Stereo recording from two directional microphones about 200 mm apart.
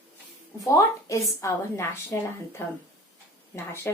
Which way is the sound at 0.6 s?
15° left (ahead or behind).